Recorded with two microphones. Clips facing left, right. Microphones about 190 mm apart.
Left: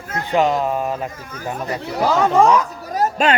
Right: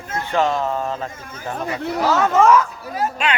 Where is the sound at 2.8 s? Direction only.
40° left (ahead or behind).